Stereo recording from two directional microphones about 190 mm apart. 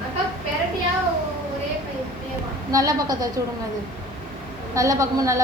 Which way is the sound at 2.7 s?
20° right (ahead or behind).